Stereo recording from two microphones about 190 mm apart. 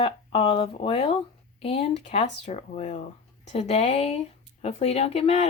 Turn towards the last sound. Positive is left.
turn(degrees=30)  # may be behind; listen again after turning